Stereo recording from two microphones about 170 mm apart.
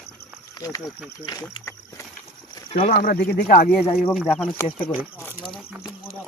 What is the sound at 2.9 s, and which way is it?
Speech, 60° left (ahead or behind).